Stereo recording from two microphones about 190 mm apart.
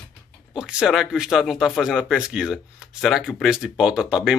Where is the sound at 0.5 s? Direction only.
5° right (ahead or behind).